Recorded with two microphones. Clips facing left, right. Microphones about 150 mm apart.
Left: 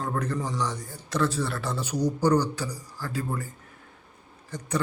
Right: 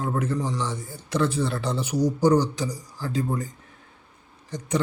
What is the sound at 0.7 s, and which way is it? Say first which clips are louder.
Speech: right 3 dB; 10° right (ahead or behind).